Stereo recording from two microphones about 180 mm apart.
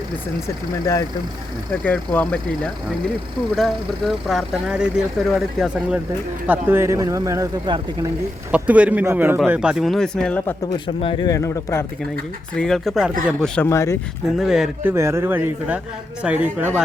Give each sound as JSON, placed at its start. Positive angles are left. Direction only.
{"t": 0.4, "sound": "speech", "side_deg": 20}
{"t": 1.8, "sound": "speech", "side_deg": 10}
{"t": 3.5, "sound": "speech", "side_deg": 0}
{"t": 10.7, "sound": "speech", "side_deg": 30}
{"t": 12.5, "sound": "speech", "side_deg": 0}
{"t": 13.7, "sound": "speech", "side_deg": 15}
{"t": 14.3, "sound": "speech", "side_deg": 0}
{"t": 14.9, "sound": "speech", "side_deg": -15}